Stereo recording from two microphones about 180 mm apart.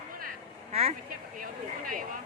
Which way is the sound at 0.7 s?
35° right (ahead or behind).